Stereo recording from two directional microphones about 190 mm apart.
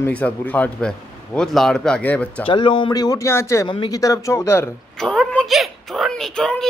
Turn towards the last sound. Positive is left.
turn(degrees=5)  # may be behind; listen again after turning